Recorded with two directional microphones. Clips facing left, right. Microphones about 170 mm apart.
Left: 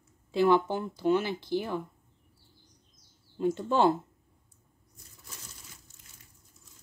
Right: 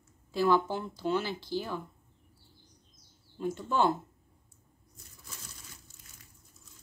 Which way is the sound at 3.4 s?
25° left (ahead or behind).